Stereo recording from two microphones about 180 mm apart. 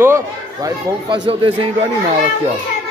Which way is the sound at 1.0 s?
30° right (ahead or behind).